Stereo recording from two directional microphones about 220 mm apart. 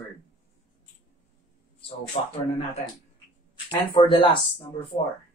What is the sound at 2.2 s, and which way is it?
Speech, 25° left (ahead or behind).